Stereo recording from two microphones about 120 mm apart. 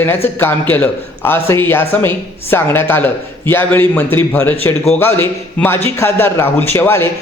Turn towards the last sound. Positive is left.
turn(degrees=20)  # may be behind; listen again after turning